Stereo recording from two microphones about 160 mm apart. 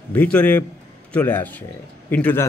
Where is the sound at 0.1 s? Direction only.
10° left (ahead or behind).